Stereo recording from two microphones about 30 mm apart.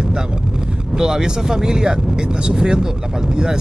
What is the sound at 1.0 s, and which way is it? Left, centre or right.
Speech, right.